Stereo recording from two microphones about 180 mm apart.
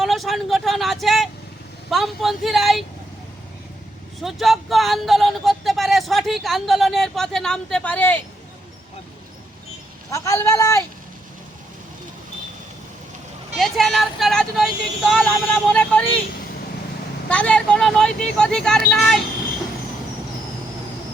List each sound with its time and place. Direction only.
0.0 s speech: centre (ahead or behind)
4.2 s speech: centre (ahead or behind)
10.1 s speech: 15° left (ahead or behind)
13.6 s speech: centre (ahead or behind)
17.2 s speech: 5° left (ahead or behind)